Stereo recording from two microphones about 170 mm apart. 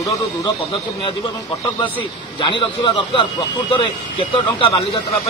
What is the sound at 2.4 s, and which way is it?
Speech, 30° left (ahead or behind).